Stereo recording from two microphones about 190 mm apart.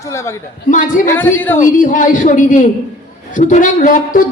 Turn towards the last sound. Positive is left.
turn(degrees=45)  # may be behind; listen again after turning